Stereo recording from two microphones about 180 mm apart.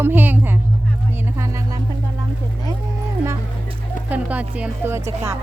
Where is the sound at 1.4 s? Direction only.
15° right (ahead or behind).